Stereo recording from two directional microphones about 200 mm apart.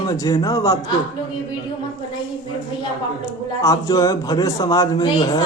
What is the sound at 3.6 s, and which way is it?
A man's voice, 15° left (ahead or behind).